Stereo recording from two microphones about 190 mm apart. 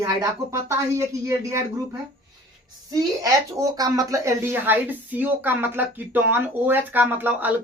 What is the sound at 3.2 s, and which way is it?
Speech, 20° right (ahead or behind).